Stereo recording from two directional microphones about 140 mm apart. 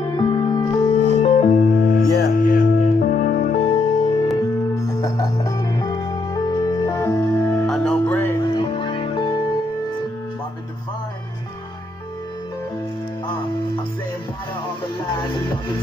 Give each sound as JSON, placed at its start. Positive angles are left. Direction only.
{"t": 0.3, "sound": "music", "side_deg": 30}
{"t": 1.1, "sound": "music", "side_deg": 50}
{"t": 4.7, "sound": "music", "side_deg": 25}
{"t": 8.5, "sound": "music", "side_deg": 35}